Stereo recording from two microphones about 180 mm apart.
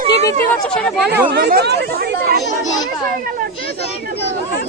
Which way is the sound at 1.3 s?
60° right (ahead or behind).